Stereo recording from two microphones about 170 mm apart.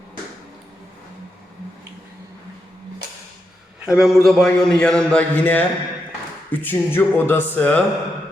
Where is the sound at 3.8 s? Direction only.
5° right (ahead or behind).